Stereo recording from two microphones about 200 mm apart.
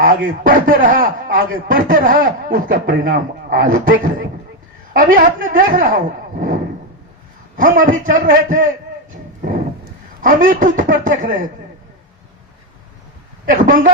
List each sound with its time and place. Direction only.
0.3 s speech: 45° right (ahead or behind)
7.5 s speech: 40° right (ahead or behind)
9.4 s a sound: 45° right (ahead or behind)
13.4 s speech: 40° right (ahead or behind)